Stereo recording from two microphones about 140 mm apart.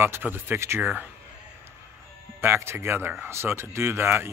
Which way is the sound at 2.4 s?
15° right (ahead or behind).